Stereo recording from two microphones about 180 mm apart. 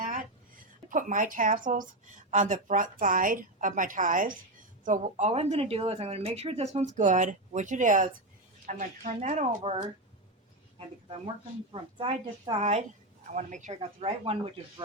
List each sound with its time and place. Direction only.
0.9 s a woman's voice: 45° right (ahead or behind)
11.7 s speech: 30° right (ahead or behind)
12.5 s speech: 40° right (ahead or behind)